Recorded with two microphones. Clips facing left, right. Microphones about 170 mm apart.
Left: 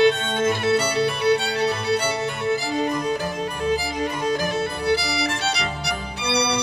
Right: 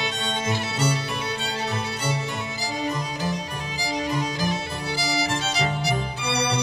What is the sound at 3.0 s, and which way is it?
Music, 55° left (ahead or behind).